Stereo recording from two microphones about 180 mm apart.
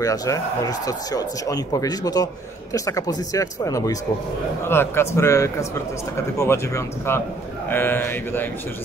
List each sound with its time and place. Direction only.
0.0 s a man's voice: 20° left (ahead or behind)